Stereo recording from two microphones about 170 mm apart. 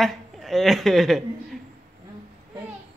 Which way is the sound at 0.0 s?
Centre (ahead or behind).